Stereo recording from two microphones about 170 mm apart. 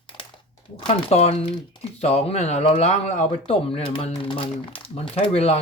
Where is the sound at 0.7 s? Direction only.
35° left (ahead or behind).